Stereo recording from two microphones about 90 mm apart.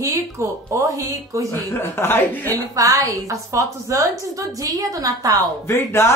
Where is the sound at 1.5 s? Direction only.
25° left (ahead or behind).